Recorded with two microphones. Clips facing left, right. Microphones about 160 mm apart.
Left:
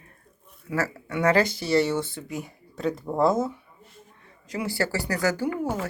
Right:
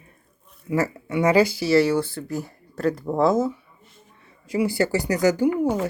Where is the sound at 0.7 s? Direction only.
15° right (ahead or behind); by 3.6 s centre (ahead or behind).